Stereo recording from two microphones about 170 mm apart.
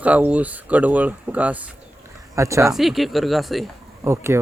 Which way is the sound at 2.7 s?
Centre (ahead or behind).